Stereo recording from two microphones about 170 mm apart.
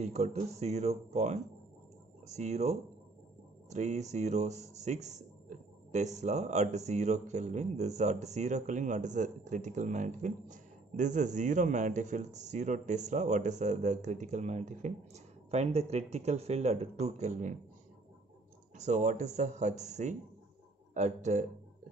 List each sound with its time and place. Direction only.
0.0 s speech: 40° right (ahead or behind)
18.8 s speech: 45° right (ahead or behind)